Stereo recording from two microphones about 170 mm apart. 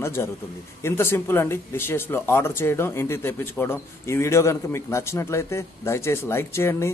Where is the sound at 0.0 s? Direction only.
15° left (ahead or behind).